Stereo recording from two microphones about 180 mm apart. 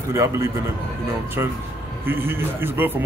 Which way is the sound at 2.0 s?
10° right (ahead or behind).